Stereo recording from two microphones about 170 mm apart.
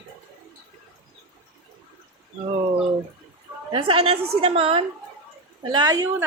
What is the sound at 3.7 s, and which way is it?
A woman's voice, 30° right (ahead or behind).